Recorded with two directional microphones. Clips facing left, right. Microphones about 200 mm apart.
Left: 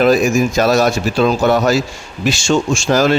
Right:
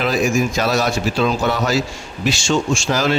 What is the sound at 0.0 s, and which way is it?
Speech, 45° left (ahead or behind).